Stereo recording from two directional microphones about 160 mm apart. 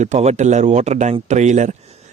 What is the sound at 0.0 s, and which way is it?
A man's voice, 45° right (ahead or behind).